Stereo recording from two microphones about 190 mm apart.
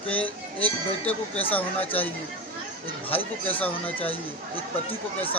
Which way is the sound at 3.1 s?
10° left (ahead or behind).